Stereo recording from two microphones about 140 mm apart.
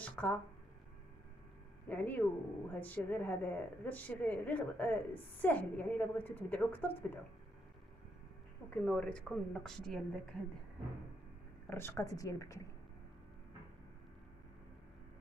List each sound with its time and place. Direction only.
0.0 s a sound: 10° left (ahead or behind)
1.9 s a woman's voice: 10° left (ahead or behind)
8.6 s a woman's voice: 5° left (ahead or behind)
11.7 s speech: 15° left (ahead or behind)